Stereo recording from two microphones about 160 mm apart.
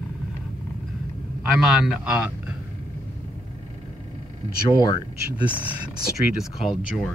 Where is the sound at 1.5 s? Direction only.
5° right (ahead or behind).